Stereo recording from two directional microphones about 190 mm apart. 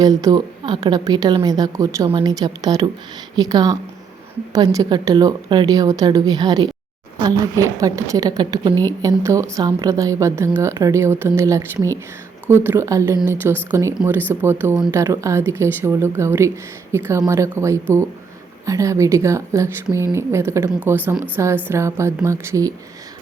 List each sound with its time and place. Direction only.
0.0 s a woman's voice: 20° right (ahead or behind)